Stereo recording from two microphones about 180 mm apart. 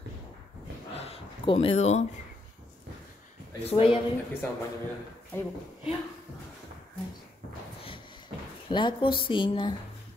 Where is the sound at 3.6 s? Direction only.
30° left (ahead or behind).